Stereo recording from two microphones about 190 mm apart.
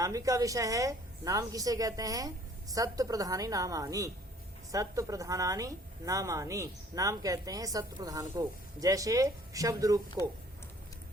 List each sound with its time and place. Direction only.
0.0 s a woman's voice: 15° right (ahead or behind)